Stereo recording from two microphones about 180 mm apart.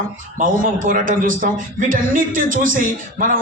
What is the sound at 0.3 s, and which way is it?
A man's voice, 50° right (ahead or behind).